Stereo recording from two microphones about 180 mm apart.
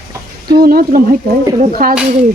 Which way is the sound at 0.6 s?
55° right (ahead or behind).